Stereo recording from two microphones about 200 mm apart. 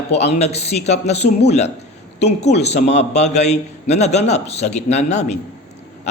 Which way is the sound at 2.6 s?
35° left (ahead or behind).